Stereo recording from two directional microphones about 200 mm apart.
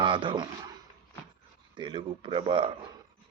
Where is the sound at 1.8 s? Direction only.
25° right (ahead or behind).